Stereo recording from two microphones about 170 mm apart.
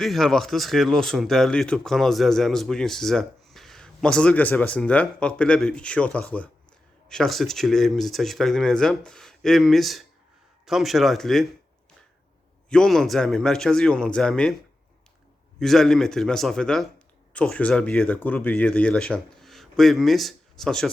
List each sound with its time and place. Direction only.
0.0 s speech: centre (ahead or behind)
12.7 s speech: 5° left (ahead or behind)
15.5 s speech: 5° left (ahead or behind)